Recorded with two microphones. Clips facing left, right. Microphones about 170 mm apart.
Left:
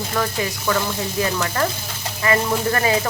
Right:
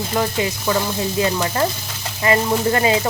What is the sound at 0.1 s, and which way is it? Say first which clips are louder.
Speech: right 3 dB; 20° right (ahead or behind).